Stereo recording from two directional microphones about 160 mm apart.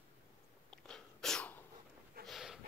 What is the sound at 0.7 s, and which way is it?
Sneeze, 5° left (ahead or behind).